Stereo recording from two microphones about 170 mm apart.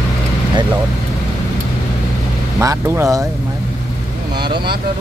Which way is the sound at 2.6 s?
20° right (ahead or behind).